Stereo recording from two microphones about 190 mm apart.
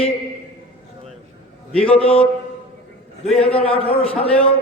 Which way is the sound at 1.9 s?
30° left (ahead or behind).